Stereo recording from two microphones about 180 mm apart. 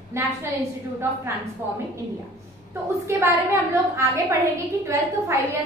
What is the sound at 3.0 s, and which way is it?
A woman's voice, 15° right (ahead or behind).